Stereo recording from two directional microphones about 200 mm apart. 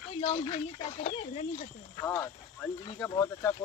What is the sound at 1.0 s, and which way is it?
Speech, 35° left (ahead or behind).